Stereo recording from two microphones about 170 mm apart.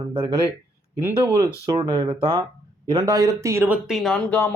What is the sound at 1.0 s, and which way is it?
Speech, 15° right (ahead or behind).